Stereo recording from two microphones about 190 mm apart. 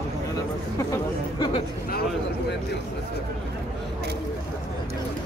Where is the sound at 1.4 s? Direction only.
25° left (ahead or behind).